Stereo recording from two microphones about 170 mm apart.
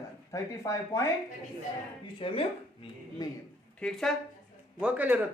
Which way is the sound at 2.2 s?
35° left (ahead or behind).